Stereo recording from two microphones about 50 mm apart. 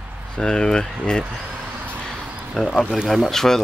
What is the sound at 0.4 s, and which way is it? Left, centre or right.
Speech, centre.